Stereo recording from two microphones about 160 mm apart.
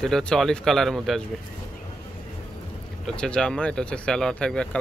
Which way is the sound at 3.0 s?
5° left (ahead or behind).